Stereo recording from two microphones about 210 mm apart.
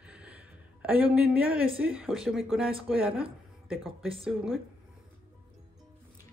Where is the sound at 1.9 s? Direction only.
5° right (ahead or behind).